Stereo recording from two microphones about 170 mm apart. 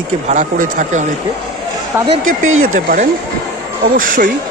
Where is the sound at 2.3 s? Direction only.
55° right (ahead or behind).